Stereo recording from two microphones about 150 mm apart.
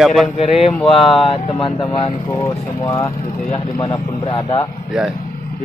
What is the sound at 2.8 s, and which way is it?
Speech, 20° left (ahead or behind).